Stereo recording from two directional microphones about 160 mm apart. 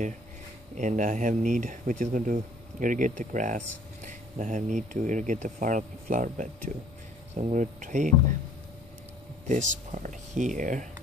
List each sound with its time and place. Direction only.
0.7 s speech: 50° right (ahead or behind)
9.5 s speech: 50° right (ahead or behind)